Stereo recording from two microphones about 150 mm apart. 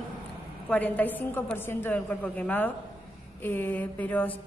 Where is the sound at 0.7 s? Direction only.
10° left (ahead or behind).